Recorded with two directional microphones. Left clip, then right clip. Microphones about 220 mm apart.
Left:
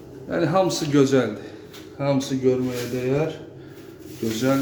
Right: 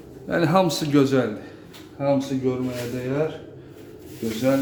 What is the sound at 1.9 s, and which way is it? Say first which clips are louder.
Speech: right 1 dB; 5° left (ahead or behind).